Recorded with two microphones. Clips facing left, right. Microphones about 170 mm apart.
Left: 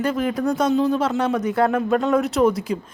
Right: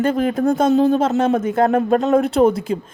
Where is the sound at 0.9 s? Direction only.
25° right (ahead or behind).